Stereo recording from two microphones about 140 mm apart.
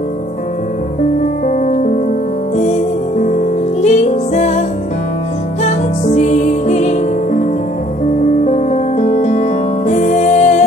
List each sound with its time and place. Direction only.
1.5 s music: 60° left (ahead or behind)
8.5 s music: 60° left (ahead or behind)